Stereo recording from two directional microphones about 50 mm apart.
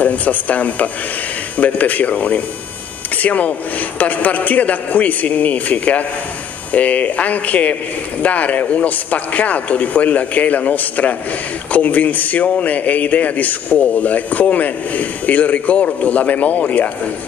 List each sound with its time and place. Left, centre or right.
0.0 s a man's voice: left